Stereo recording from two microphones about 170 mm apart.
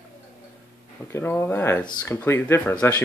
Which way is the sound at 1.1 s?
15° left (ahead or behind).